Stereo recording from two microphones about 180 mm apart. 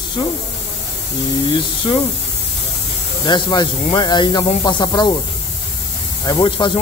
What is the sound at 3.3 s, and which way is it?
Speech, 25° left (ahead or behind).